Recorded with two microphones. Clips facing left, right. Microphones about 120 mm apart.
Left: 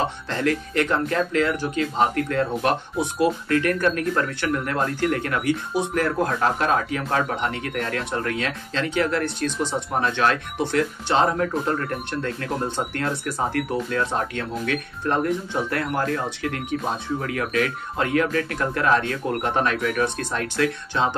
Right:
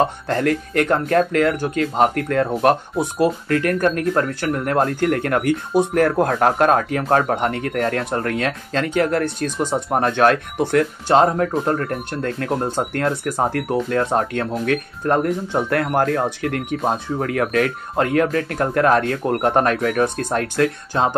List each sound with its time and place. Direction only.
0.3 s speech: 50° right (ahead or behind)